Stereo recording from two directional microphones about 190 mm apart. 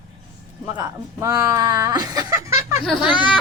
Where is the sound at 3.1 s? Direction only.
25° left (ahead or behind).